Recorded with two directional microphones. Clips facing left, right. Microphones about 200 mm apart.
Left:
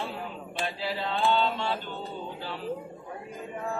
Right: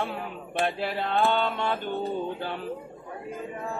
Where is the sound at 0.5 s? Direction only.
55° right (ahead or behind).